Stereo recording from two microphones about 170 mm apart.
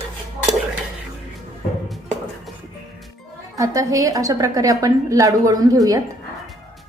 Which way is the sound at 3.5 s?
20° right (ahead or behind).